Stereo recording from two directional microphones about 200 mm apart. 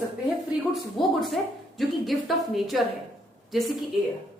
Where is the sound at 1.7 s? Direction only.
Centre (ahead or behind).